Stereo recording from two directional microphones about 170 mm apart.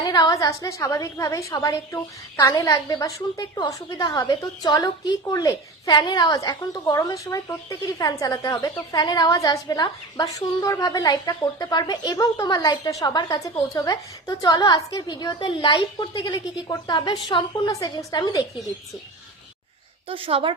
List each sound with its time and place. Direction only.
0.0 s a woman's voice: 25° left (ahead or behind)
20.1 s a woman's voice: 30° right (ahead or behind)